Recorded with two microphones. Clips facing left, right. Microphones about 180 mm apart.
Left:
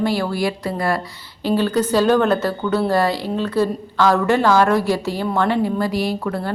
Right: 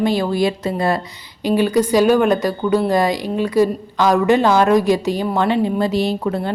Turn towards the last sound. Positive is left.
turn(degrees=-25)  # may be behind; listen again after turning